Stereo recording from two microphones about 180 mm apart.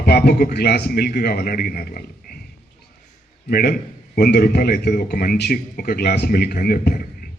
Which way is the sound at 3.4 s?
55° left (ahead or behind).